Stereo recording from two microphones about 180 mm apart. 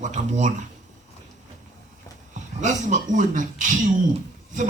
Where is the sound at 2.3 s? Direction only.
40° right (ahead or behind).